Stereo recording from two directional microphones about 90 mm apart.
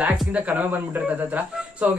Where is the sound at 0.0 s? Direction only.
15° right (ahead or behind).